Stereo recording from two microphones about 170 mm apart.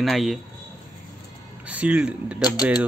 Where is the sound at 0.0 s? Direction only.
Centre (ahead or behind).